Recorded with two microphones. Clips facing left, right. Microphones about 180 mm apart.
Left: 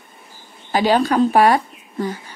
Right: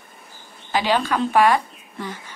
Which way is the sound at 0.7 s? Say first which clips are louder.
Left 5 dB; 40° left (ahead or behind).